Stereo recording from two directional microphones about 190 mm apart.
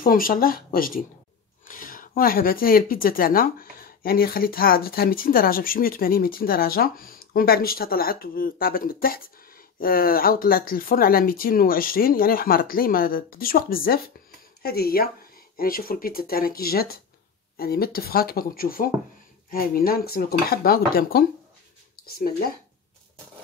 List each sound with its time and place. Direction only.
0.0 s speech: 50° left (ahead or behind)